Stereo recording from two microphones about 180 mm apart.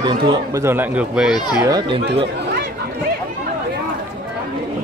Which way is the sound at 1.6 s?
20° right (ahead or behind).